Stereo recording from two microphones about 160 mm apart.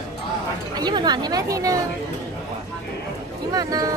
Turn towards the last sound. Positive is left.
turn(degrees=-25)  # may be behind; listen again after turning